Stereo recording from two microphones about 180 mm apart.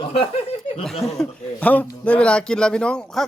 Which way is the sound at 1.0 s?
Centre (ahead or behind).